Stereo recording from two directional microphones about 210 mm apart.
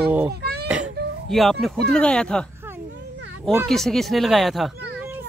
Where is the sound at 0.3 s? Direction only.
50° right (ahead or behind).